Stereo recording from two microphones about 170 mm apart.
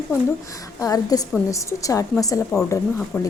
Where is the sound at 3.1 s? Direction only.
10° left (ahead or behind).